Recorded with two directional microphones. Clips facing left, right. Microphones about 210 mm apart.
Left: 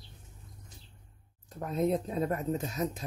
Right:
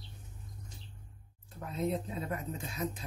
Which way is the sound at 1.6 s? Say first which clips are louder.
Left 5 dB; 45° left (ahead or behind).